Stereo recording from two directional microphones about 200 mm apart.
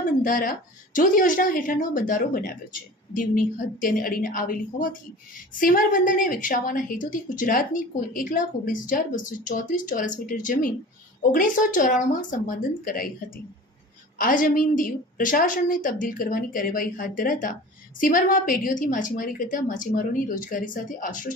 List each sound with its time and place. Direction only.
0.2 s a woman's voice: 45° left (ahead or behind)
14.1 s a woman's voice: 45° left (ahead or behind)